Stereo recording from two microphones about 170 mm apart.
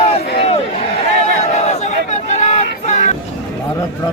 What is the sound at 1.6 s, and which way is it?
Crowd, 40° left (ahead or behind).